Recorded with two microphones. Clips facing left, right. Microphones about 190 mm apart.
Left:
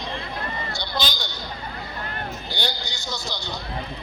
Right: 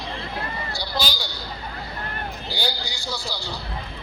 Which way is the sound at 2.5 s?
10° right (ahead or behind).